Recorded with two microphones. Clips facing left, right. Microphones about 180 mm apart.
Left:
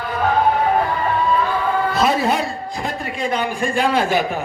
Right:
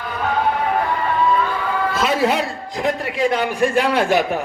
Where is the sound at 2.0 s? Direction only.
80° right.